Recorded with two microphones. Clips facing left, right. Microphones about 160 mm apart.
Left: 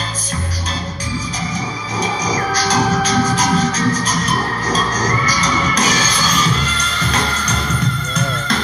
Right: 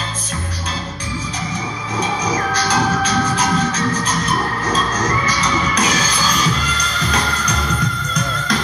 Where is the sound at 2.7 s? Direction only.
30° left (ahead or behind).